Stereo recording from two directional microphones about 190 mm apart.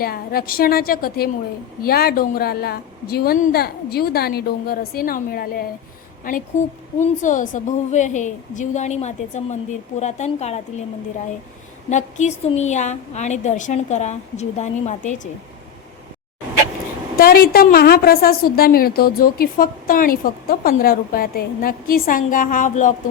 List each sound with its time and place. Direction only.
0.0 s a woman's voice: 50° left (ahead or behind); by 10.8 s 35° left (ahead or behind)
11.9 s a woman's voice: 40° left (ahead or behind)
17.2 s a woman's voice: 55° left (ahead or behind)